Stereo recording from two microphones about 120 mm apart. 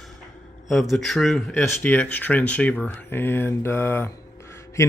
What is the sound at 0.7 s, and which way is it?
Speech, centre (ahead or behind).